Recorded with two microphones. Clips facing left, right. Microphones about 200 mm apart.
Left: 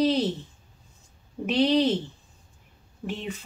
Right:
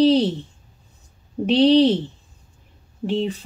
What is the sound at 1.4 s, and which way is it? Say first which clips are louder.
Speech: right 7 dB; 30° right (ahead or behind).